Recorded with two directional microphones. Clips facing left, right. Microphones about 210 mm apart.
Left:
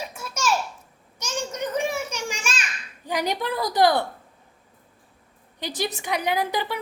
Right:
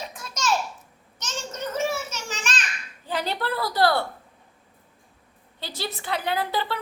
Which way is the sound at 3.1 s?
15° left (ahead or behind).